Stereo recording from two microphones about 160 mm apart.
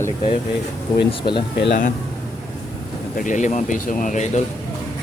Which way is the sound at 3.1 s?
55° left (ahead or behind).